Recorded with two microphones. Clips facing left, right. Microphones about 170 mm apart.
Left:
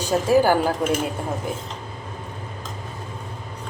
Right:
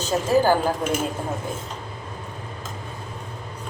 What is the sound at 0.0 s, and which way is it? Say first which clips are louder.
Speech: left 2 dB; 15° left (ahead or behind).